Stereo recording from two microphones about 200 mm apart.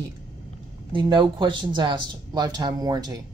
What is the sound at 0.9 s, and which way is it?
Speech, 25° right (ahead or behind).